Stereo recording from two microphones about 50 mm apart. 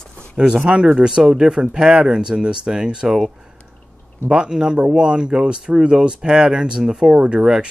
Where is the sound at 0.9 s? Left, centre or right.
Centre.